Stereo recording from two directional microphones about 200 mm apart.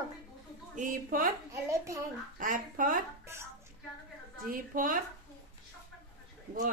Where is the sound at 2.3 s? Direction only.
45° right (ahead or behind).